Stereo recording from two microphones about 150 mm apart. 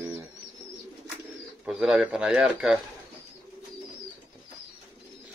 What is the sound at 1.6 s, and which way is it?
Speech, centre (ahead or behind).